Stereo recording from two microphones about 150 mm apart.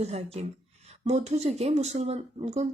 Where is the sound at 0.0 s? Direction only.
40° right (ahead or behind).